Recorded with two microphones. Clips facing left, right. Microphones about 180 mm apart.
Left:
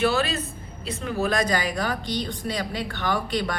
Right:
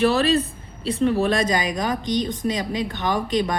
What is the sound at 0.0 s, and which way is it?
A woman's voice, 35° right (ahead or behind).